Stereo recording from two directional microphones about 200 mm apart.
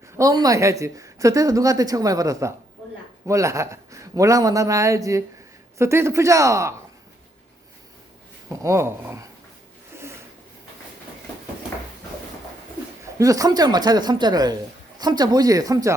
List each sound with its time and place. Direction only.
0.2 s speech: 20° right (ahead or behind)
8.4 s speech: 15° right (ahead or behind)
9.9 s a sound: 10° right (ahead or behind)
13.1 s speech: 15° right (ahead or behind)